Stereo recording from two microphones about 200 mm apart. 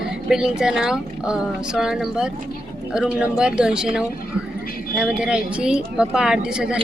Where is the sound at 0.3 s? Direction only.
5° right (ahead or behind).